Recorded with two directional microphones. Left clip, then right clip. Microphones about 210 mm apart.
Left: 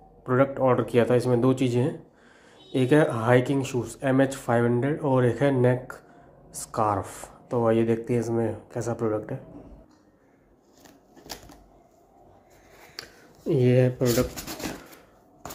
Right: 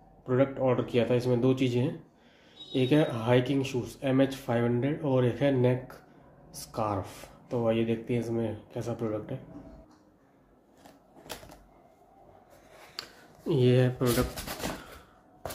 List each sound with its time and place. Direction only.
0.2 s speech: 15° left (ahead or behind)
8.3 s speech: centre (ahead or behind)
12.9 s a sound: 10° left (ahead or behind)